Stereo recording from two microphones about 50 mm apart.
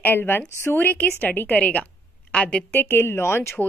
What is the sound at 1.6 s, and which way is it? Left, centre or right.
A woman's voice, left.